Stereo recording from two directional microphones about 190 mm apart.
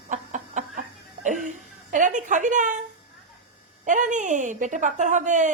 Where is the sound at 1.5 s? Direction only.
40° right (ahead or behind).